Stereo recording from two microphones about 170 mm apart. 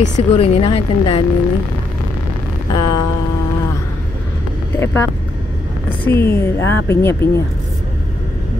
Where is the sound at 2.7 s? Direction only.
25° left (ahead or behind).